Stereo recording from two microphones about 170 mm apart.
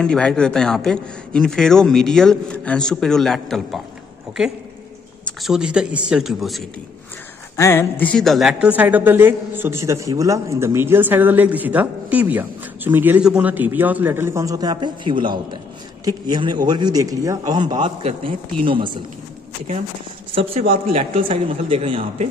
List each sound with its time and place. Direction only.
0.0 s a man's voice: 5° left (ahead or behind)
7.5 s a woman's voice: 15° left (ahead or behind); by 18.9 s 30° right (ahead or behind)
20.9 s speech: 35° right (ahead or behind)